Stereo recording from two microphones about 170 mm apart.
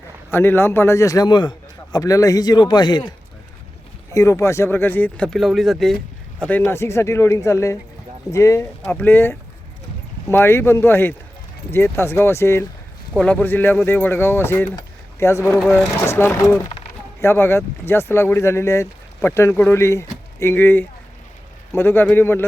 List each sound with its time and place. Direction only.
0.3 s a man's voice: 15° left (ahead or behind)
15.5 s speech: 5° left (ahead or behind)
16.0 s speech: 15° left (ahead or behind)